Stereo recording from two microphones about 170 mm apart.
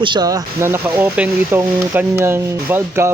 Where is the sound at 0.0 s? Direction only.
25° right (ahead or behind).